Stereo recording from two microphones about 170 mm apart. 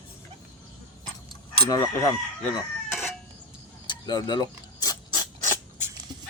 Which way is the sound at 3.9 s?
25° left (ahead or behind).